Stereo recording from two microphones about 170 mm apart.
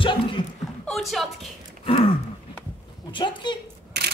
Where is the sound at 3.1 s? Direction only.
25° left (ahead or behind).